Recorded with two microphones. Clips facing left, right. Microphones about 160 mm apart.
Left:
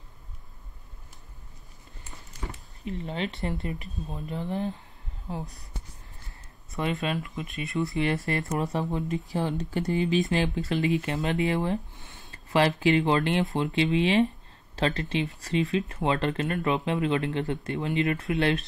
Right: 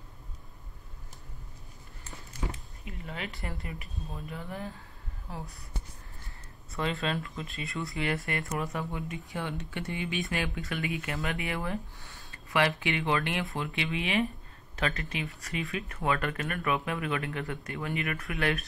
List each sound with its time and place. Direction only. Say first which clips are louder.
2.4 s a sound: right 2 dB; 10° right (ahead or behind)
2.8 s speech: left 9 dB; 30° left (ahead or behind)
6.7 s speech: left 3 dB; 20° left (ahead or behind)
12.3 s speech: left 4 dB; 35° left (ahead or behind)